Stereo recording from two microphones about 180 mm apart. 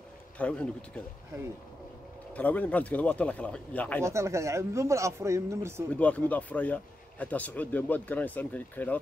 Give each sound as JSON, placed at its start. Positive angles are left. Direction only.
{"t": 0.4, "sound": "speech", "side_deg": 5}
{"t": 2.3, "sound": "speech", "side_deg": 10}
{"t": 4.0, "sound": "speech", "side_deg": -15}
{"t": 5.9, "sound": "speech", "side_deg": 10}